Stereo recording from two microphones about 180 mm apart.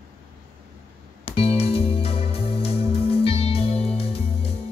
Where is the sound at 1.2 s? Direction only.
35° left (ahead or behind).